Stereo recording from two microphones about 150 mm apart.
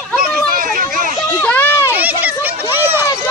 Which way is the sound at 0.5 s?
65° right (ahead or behind).